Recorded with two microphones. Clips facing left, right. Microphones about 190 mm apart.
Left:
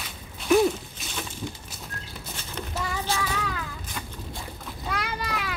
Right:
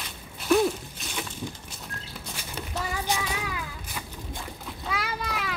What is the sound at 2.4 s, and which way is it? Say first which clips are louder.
Child singing: left 1 dB; 15° right (ahead or behind).